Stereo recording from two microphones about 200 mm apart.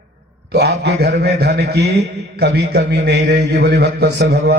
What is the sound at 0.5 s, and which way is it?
A man's voice, 55° right (ahead or behind).